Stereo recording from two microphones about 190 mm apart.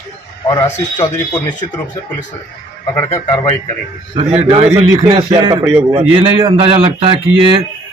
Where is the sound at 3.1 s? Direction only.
20° left (ahead or behind).